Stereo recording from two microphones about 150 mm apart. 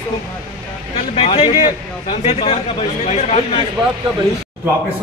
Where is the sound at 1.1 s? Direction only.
40° left (ahead or behind).